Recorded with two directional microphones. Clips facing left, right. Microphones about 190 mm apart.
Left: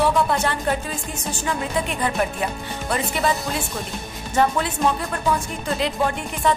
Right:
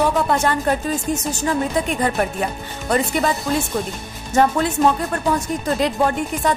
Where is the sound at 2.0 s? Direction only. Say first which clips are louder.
Right 3 dB; 45° right (ahead or behind).